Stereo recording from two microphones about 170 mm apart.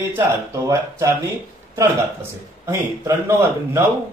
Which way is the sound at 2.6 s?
15° right (ahead or behind).